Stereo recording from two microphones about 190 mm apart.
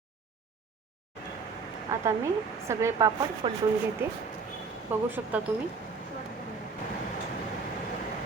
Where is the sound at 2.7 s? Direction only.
15° right (ahead or behind).